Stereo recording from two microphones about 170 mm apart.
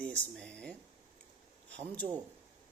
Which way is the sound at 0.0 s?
5° left (ahead or behind).